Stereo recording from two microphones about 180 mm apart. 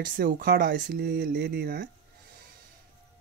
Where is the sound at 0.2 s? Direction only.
55° right (ahead or behind).